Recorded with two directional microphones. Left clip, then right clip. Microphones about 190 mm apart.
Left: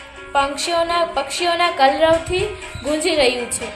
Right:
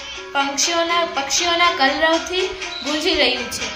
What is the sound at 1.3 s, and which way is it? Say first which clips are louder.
Music: right 4 dB; 40° left (ahead or behind).